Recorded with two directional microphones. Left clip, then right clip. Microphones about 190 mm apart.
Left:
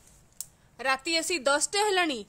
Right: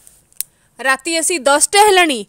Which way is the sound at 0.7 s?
40° right (ahead or behind).